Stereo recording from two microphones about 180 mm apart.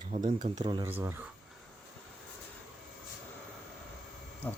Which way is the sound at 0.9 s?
10° right (ahead or behind).